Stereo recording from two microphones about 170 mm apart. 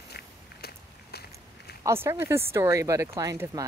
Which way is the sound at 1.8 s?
15° right (ahead or behind).